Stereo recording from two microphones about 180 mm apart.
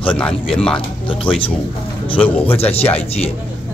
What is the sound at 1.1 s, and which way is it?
Speech, 30° left (ahead or behind).